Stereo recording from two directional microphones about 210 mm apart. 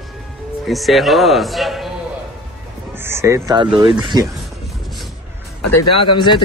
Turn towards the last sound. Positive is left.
turn(degrees=20)  # may be behind; listen again after turning